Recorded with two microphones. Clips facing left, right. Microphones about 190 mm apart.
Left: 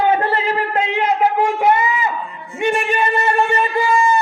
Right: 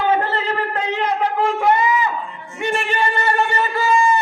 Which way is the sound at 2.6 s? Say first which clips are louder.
Left 3 dB; 20° left (ahead or behind).